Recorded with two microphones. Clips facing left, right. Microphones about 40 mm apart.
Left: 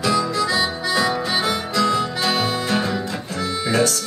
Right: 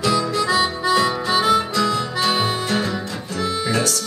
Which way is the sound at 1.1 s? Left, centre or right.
Centre.